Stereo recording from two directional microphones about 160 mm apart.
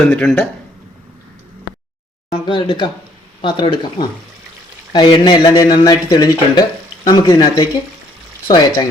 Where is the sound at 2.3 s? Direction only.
30° left (ahead or behind).